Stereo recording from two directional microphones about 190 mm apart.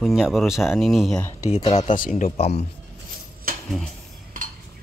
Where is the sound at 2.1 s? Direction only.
35° left (ahead or behind).